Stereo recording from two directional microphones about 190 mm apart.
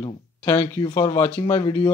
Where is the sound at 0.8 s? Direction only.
25° left (ahead or behind).